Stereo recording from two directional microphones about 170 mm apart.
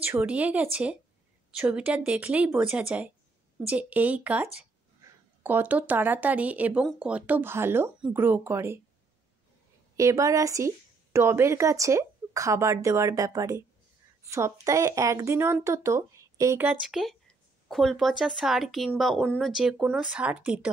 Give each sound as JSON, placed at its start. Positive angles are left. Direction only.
{"t": 0.0, "sound": "speech", "side_deg": -10}
{"t": 9.9, "sound": "speech", "side_deg": -20}
{"t": 16.8, "sound": "speech", "side_deg": 0}